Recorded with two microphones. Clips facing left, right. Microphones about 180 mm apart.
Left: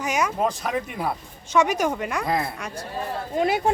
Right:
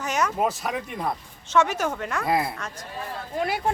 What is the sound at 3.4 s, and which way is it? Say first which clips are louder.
Speech: left 4 dB; 20° left (ahead or behind).